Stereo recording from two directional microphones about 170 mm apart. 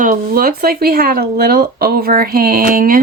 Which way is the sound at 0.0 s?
55° right (ahead or behind).